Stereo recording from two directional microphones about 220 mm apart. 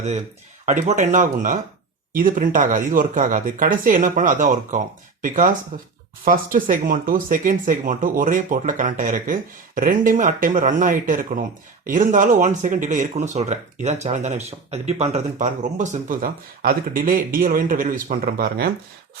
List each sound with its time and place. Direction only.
0.6 s speech: 35° right (ahead or behind)